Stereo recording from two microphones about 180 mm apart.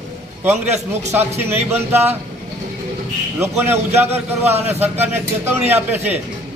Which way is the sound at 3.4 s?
10° right (ahead or behind).